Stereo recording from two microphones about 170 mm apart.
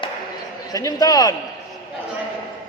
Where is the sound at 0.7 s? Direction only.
20° left (ahead or behind).